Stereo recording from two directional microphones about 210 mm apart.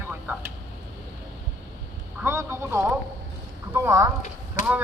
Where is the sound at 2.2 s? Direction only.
10° right (ahead or behind).